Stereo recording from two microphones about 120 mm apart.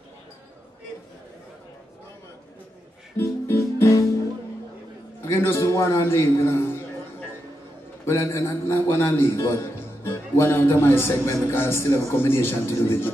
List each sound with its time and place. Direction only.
3.2 s music: 20° left (ahead or behind)
5.2 s a man's voice: 20° left (ahead or behind)